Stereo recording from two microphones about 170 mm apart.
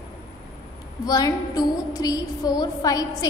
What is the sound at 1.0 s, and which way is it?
A woman's voice, 20° left (ahead or behind).